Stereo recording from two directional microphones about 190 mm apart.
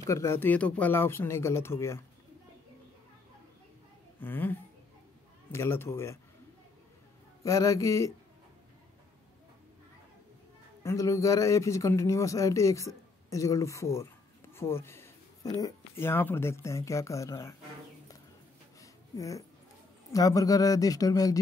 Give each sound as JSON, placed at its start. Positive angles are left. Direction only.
{"t": 0.0, "sound": "speech", "side_deg": 15}
{"t": 4.2, "sound": "speech", "side_deg": 10}
{"t": 7.4, "sound": "speech", "side_deg": 15}
{"t": 10.8, "sound": "speech", "side_deg": 15}
{"t": 14.5, "sound": "a sound", "side_deg": 15}
{"t": 15.6, "sound": "speech", "side_deg": 10}
{"t": 18.8, "sound": "a sound", "side_deg": 15}
{"t": 20.1, "sound": "speech", "side_deg": 20}